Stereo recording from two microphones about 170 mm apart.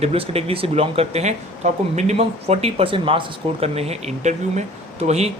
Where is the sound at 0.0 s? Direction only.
35° right (ahead or behind).